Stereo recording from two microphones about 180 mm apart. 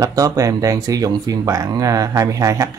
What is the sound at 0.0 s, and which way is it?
Speech, 20° right (ahead or behind).